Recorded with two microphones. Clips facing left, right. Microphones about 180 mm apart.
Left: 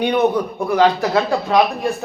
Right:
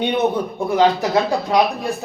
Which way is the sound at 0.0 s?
25° right (ahead or behind).